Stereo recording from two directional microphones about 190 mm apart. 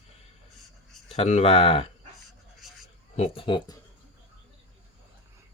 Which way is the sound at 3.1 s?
30° left (ahead or behind).